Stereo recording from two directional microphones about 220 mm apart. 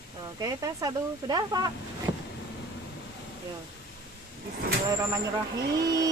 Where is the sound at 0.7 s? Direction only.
20° right (ahead or behind).